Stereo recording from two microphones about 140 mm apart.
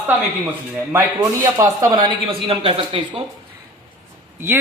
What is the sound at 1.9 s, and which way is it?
A man's voice, 35° right (ahead or behind).